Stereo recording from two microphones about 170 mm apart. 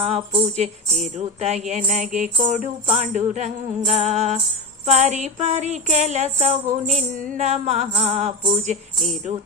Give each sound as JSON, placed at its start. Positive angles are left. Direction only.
{"t": 0.0, "sound": "jingle bell", "side_deg": -40}
{"t": 1.6, "sound": "music", "side_deg": -45}
{"t": 2.8, "sound": "jingle bell", "side_deg": -40}